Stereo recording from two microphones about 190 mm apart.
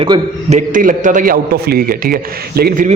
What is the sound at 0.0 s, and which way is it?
Speech, 30° right (ahead or behind).